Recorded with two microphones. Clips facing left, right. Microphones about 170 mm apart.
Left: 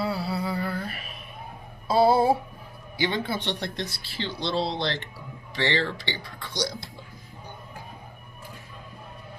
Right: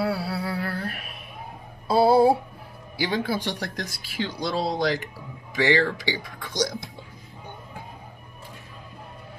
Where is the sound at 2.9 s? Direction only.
10° right (ahead or behind).